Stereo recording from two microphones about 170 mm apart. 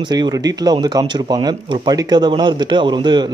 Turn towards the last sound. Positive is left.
turn(degrees=-25)  # may be behind; listen again after turning